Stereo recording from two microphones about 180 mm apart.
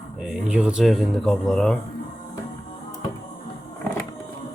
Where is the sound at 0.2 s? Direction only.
5° right (ahead or behind).